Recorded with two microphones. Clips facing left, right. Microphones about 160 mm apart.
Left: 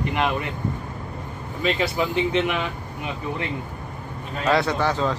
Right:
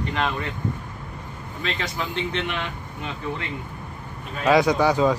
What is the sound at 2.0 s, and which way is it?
Speech, 10° left (ahead or behind).